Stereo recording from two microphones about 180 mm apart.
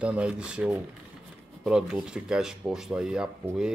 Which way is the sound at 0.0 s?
5° right (ahead or behind).